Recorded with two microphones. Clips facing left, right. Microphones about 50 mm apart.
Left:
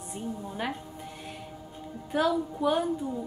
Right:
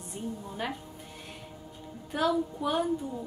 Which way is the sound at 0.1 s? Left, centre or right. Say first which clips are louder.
Left 1 dB; centre.